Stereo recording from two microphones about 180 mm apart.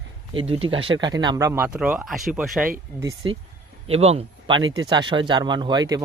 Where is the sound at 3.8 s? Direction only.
35° right (ahead or behind).